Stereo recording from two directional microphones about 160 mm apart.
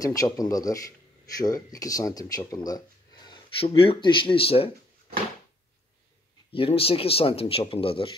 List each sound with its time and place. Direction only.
0.0 s speech: 20° left (ahead or behind)
6.5 s speech: 35° left (ahead or behind)